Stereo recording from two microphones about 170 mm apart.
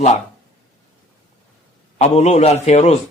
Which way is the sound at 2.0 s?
40° left (ahead or behind).